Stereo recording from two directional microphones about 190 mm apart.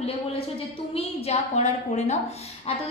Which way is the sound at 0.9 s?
30° left (ahead or behind).